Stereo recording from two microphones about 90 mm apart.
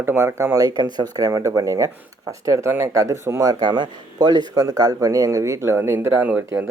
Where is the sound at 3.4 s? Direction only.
50° right (ahead or behind); by 6.2 s 25° right (ahead or behind).